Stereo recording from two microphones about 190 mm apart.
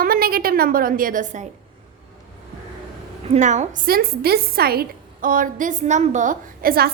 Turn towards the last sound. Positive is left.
turn(degrees=-50)  # may be behind; listen again after turning